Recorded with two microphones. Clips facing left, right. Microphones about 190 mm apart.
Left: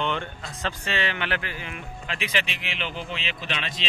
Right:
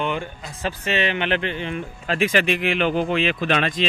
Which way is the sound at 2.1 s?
50° right (ahead or behind).